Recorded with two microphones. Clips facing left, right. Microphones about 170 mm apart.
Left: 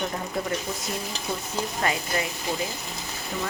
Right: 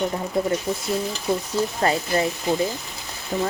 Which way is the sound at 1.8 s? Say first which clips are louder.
Right 5 dB; 35° right (ahead or behind).